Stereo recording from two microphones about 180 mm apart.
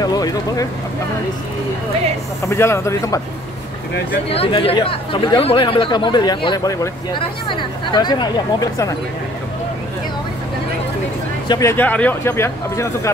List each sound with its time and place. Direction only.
0.0 s speech: 20° left (ahead or behind)
2.4 s speech: 15° left (ahead or behind)
4.3 s speech: 30° left (ahead or behind)
11.4 s speech: 20° left (ahead or behind)